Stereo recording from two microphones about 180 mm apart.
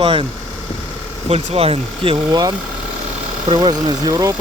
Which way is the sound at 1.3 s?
35° right (ahead or behind).